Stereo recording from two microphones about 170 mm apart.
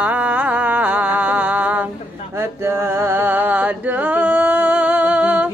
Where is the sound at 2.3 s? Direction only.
15° right (ahead or behind).